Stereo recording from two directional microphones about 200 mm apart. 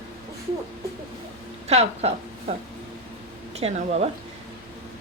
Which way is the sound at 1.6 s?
30° right (ahead or behind).